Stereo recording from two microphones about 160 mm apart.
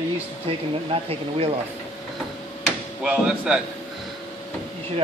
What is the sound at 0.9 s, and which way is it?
Speech, 35° right (ahead or behind).